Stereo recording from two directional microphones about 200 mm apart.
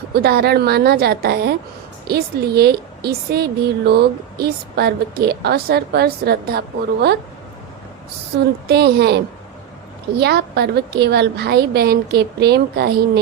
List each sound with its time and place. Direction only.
0.1 s a woman's voice: 50° right (ahead or behind)
8.7 s a woman's voice: 55° right (ahead or behind)